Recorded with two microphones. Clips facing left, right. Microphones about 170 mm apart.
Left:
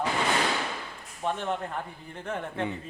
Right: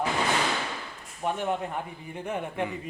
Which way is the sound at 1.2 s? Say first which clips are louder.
Right 2 dB; 10° right (ahead or behind).